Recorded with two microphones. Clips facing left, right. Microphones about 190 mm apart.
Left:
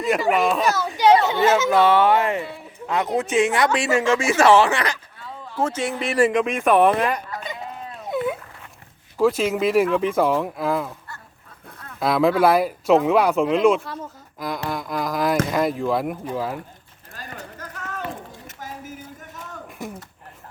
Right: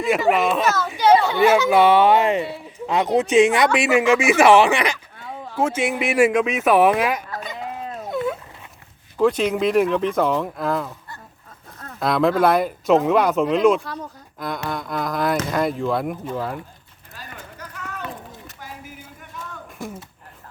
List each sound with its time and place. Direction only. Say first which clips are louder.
0.3 s speech: right 1 dB; centre (ahead or behind)
0.6 s a child's voice: left 1 dB; 15° left (ahead or behind)
1.7 s speech: right 2 dB; 15° right (ahead or behind)
8.0 s a sound: left 1 dB; 5° left (ahead or behind)
9.1 s speech: right 1 dB; 5° left (ahead or behind)
11.9 s speech: even; 5° left (ahead or behind)
17.2 s a sound: left 2 dB; 45° left (ahead or behind)
19.8 s speech: right 1 dB; 20° left (ahead or behind)